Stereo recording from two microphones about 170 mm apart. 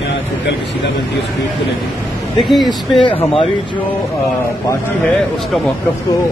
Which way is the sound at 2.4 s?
Centre (ahead or behind).